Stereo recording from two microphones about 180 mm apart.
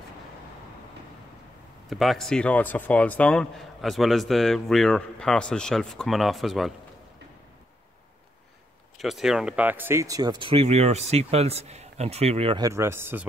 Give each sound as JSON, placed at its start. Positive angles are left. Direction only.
{"t": 1.9, "sound": "speech", "side_deg": 0}
{"t": 8.9, "sound": "speech", "side_deg": 0}